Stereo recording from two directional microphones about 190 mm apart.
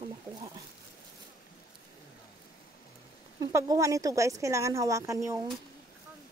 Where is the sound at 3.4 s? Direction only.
15° right (ahead or behind).